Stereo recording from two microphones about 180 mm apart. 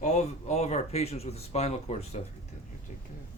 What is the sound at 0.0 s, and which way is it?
Speech, 40° left (ahead or behind).